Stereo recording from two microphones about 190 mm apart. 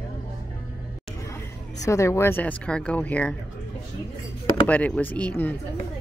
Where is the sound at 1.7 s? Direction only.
15° left (ahead or behind).